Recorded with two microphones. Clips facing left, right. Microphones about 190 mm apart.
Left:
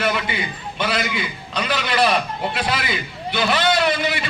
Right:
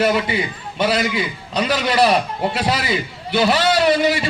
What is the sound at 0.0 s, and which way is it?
A man's voice, 35° right (ahead or behind).